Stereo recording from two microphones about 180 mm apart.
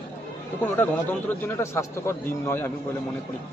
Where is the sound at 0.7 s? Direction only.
10° left (ahead or behind).